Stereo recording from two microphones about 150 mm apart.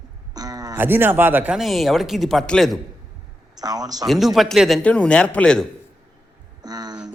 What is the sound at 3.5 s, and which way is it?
Speech, 25° right (ahead or behind).